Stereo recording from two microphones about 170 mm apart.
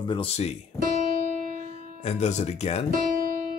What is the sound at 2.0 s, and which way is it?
Speech, 40° left (ahead or behind).